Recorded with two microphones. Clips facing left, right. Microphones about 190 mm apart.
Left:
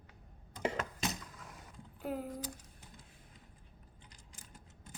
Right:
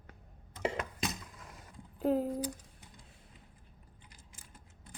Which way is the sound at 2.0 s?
40° right (ahead or behind).